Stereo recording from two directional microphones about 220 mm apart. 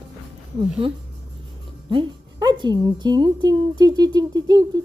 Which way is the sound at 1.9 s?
20° right (ahead or behind).